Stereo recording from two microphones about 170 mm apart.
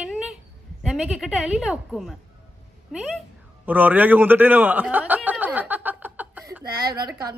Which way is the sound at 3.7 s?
10° right (ahead or behind).